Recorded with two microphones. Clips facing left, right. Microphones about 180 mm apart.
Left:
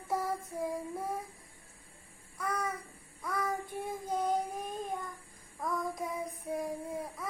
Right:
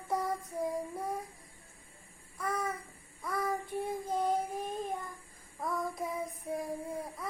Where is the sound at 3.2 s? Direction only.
Centre (ahead or behind).